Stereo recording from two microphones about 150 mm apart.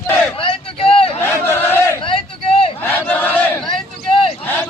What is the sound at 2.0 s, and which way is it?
Vehicle, 35° left (ahead or behind).